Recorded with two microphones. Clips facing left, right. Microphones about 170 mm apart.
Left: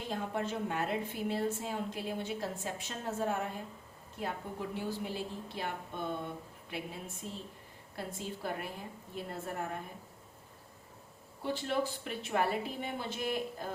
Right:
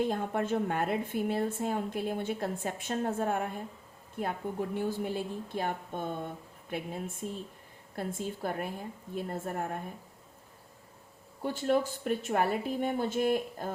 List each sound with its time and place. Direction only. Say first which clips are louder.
0.0 s a woman's voice: right 6 dB; 50° right (ahead or behind)
11.4 s a woman's voice: right 5 dB; 45° right (ahead or behind)